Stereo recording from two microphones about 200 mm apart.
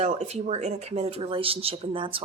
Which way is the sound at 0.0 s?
35° right (ahead or behind).